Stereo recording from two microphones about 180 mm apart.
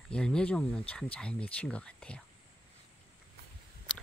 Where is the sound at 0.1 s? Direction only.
5° left (ahead or behind).